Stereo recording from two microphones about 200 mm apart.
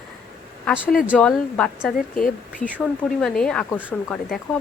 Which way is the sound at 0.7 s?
5° right (ahead or behind).